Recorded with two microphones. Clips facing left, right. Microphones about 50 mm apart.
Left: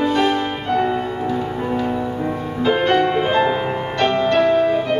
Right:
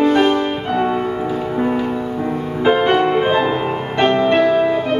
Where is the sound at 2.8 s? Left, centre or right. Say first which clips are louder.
Right 2 dB; centre.